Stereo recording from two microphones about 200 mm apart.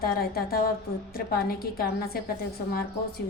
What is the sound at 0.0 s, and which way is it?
A woman's voice, 50° left (ahead or behind).